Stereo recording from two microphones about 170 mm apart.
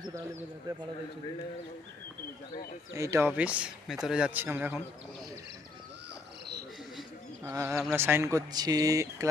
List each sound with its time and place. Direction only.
0.1 s speech: 20° right (ahead or behind)
2.9 s speech: 15° right (ahead or behind)
7.4 s speech: 15° right (ahead or behind)